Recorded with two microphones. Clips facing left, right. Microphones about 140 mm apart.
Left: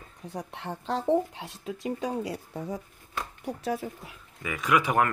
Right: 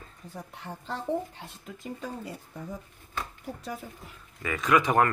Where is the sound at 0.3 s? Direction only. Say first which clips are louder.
Left 5 dB; 75° left (ahead or behind).